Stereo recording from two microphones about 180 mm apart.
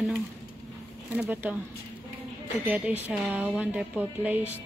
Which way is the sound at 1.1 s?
10° right (ahead or behind).